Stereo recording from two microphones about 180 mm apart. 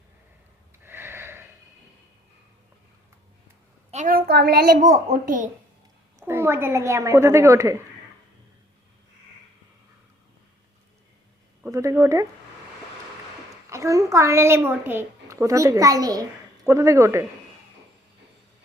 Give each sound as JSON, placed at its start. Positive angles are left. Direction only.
{"t": 0.9, "sound": "a sound", "side_deg": -15}
{"t": 3.9, "sound": "a woman's voice", "side_deg": -50}
{"t": 4.3, "sound": "a woman's voice", "side_deg": -65}
{"t": 4.8, "sound": "a woman's voice", "side_deg": -40}
{"t": 6.1, "sound": "a woman's voice", "side_deg": -15}
{"t": 11.6, "sound": "speech", "side_deg": -15}
{"t": 13.7, "sound": "a woman's voice", "side_deg": -15}